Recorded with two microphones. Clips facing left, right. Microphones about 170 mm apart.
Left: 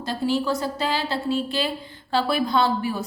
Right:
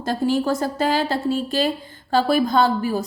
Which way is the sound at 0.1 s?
50° right (ahead or behind).